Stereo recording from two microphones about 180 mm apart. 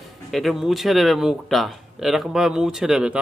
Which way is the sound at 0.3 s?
Centre (ahead or behind).